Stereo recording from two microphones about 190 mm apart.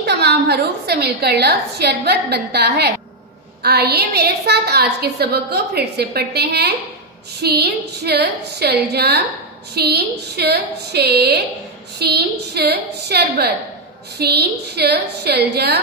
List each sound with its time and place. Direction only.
0.0 s a woman's voice: 60° right (ahead or behind)